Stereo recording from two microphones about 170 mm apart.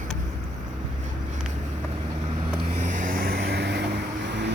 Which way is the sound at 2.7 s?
50° right (ahead or behind).